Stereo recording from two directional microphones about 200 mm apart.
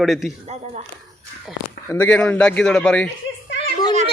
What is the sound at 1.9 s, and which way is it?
Speech, 10° left (ahead or behind).